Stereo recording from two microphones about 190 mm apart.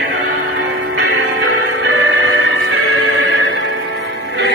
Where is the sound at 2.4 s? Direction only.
90° right.